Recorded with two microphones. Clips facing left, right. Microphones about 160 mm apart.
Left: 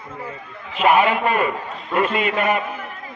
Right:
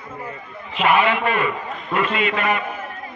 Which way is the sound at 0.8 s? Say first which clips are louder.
Left 2 dB; 45° left (ahead or behind).